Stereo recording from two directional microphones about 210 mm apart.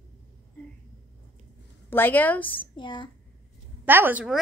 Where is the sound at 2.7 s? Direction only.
20° left (ahead or behind).